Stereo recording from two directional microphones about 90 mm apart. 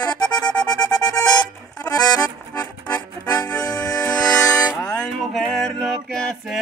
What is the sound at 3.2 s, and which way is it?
Music, 35° left (ahead or behind).